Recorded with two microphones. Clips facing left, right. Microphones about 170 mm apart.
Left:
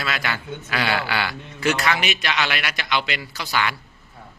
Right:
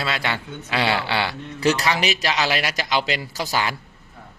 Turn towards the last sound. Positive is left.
turn(degrees=-40)  # may be behind; listen again after turning